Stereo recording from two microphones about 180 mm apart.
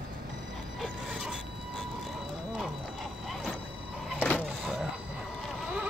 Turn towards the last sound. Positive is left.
turn(degrees=5)  # may be behind; listen again after turning